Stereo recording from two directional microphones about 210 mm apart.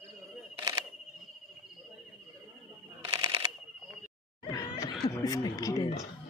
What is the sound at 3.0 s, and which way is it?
Shuffling cards, 20° right (ahead or behind).